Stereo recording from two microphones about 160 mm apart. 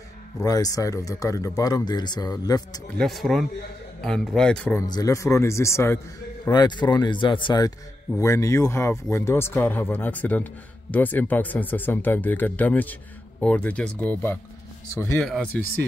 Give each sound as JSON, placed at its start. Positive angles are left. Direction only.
{"t": 0.4, "sound": "speech", "side_deg": 25}
{"t": 3.0, "sound": "a man's voice", "side_deg": 0}
{"t": 4.7, "sound": "a man's voice", "side_deg": 25}